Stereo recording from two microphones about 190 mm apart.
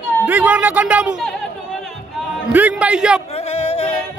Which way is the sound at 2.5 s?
5° right (ahead or behind).